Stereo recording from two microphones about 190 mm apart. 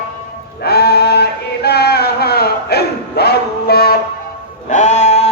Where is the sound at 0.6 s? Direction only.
55° left (ahead or behind).